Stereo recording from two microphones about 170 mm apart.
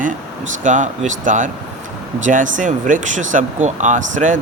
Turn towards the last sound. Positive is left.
turn(degrees=-50)  # may be behind; listen again after turning